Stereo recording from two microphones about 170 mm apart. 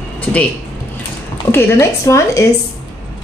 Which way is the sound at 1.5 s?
15° left (ahead or behind).